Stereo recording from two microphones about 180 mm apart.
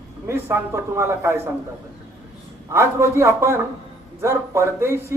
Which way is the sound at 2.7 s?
15° right (ahead or behind).